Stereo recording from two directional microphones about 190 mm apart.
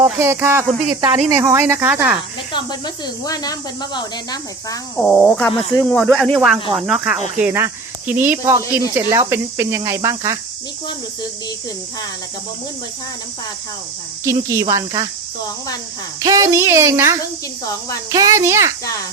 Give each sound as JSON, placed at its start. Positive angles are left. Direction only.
{"t": 0.0, "sound": "speech", "side_deg": -15}
{"t": 0.7, "sound": "speech", "side_deg": 0}
{"t": 1.4, "sound": "speech", "side_deg": -15}
{"t": 2.5, "sound": "speech", "side_deg": 25}
{"t": 4.9, "sound": "speech", "side_deg": 5}
{"t": 14.3, "sound": "speech", "side_deg": -15}
{"t": 16.2, "sound": "speech", "side_deg": -20}
{"t": 17.7, "sound": "speech", "side_deg": 20}
{"t": 18.1, "sound": "speech", "side_deg": -20}